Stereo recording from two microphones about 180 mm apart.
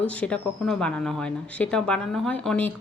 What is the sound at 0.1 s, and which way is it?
A woman's voice, 5° left (ahead or behind).